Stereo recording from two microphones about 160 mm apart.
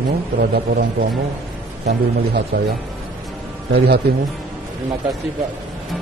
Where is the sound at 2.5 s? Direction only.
90° right.